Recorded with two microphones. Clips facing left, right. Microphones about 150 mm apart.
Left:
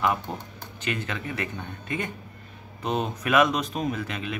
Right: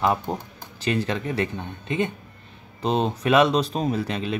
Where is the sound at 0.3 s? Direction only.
30° right (ahead or behind).